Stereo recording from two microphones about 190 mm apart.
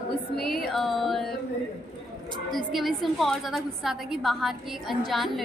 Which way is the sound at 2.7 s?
Centre (ahead or behind).